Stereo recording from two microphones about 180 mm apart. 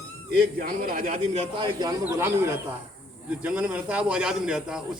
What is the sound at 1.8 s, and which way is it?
A man's voice, 15° right (ahead or behind).